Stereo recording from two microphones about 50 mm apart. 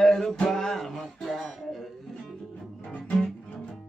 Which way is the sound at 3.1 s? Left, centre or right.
Centre.